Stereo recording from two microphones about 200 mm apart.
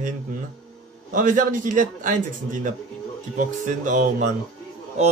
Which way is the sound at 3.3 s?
40° right (ahead or behind).